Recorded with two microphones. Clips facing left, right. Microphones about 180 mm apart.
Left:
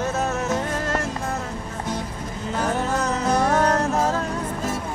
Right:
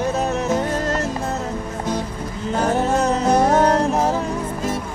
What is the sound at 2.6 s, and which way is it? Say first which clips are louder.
Music: right 5 dB; 30° right (ahead or behind).